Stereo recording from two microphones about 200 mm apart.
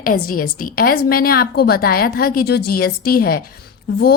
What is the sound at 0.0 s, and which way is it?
Speech, 45° left (ahead or behind).